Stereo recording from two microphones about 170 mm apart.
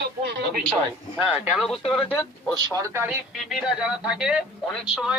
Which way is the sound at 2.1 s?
10° left (ahead or behind).